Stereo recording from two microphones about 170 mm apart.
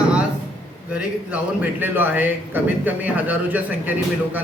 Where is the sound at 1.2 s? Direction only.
10° right (ahead or behind).